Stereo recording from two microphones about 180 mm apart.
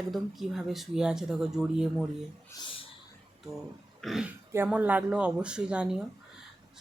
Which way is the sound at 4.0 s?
Centre (ahead or behind).